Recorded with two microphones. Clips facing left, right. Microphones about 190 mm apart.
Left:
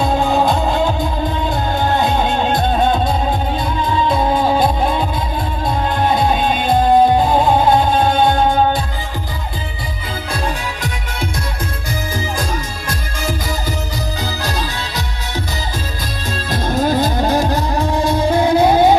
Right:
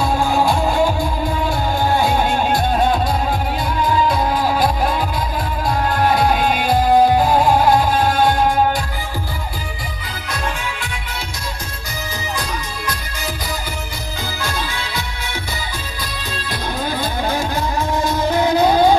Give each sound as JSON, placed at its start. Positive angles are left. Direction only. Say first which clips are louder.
{"t": 0.0, "sound": "music", "louder": "left 2 dB", "side_deg": 20}
{"t": 10.3, "sound": "music", "louder": "left 1 dB", "side_deg": 35}
{"t": 12.4, "sound": "music", "louder": "left 3 dB", "side_deg": 45}
{"t": 14.4, "sound": "music", "louder": "left 2 dB", "side_deg": 40}
{"t": 16.4, "sound": "music", "louder": "left 7 dB", "side_deg": 45}